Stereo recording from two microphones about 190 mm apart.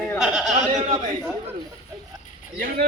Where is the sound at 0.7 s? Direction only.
30° right (ahead or behind).